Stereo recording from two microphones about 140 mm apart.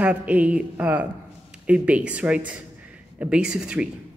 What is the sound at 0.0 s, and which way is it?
Speech, 10° right (ahead or behind).